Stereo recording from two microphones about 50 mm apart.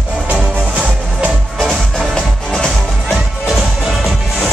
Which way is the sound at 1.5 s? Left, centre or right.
Centre.